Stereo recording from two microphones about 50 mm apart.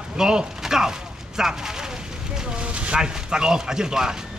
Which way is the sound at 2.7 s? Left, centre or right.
Centre.